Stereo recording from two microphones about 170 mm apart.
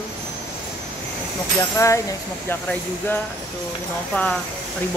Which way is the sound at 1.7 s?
15° left (ahead or behind).